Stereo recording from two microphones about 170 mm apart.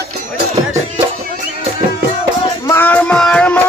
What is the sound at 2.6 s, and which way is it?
Music, 15° left (ahead or behind).